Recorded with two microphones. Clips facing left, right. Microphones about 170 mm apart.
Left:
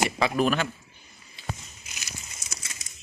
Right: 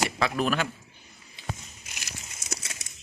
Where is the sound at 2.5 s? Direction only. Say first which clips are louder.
Right 7 dB; 70° right (ahead or behind).